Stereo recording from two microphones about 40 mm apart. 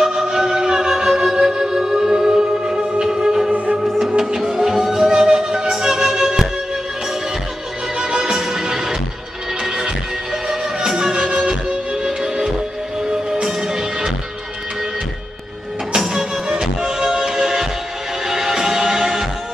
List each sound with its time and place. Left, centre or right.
0.0 s music: centre
8.0 s music: centre
16.1 s music: centre